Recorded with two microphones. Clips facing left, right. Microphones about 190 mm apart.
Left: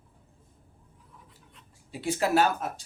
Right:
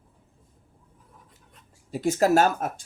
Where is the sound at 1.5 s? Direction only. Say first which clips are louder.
Right 8 dB; 45° right (ahead or behind).